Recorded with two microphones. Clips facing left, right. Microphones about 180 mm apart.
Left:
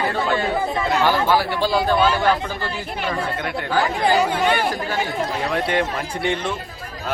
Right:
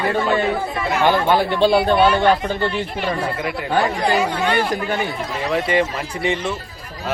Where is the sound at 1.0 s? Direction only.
20° right (ahead or behind).